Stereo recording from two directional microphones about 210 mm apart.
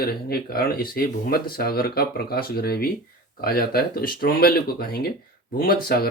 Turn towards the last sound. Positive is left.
turn(degrees=45)  # may be behind; listen again after turning